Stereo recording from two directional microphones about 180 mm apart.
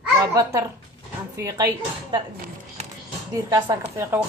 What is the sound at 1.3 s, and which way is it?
Speech, 20° right (ahead or behind).